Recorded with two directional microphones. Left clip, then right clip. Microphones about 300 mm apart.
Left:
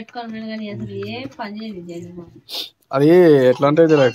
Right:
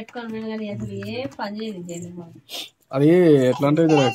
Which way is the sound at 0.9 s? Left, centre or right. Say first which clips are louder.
Left 1 dB; centre.